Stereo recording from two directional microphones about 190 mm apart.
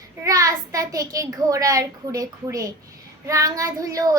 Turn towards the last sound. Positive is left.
turn(degrees=-20)  # may be behind; listen again after turning